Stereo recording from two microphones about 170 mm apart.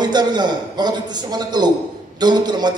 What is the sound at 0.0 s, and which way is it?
A man's voice, 25° right (ahead or behind).